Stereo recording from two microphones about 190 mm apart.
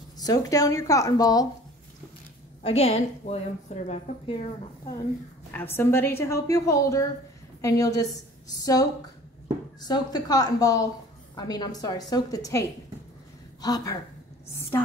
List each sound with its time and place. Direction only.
0.2 s a woman's voice: 20° left (ahead or behind)
2.6 s a woman's voice: 30° left (ahead or behind)
5.5 s a woman's voice: 10° left (ahead or behind)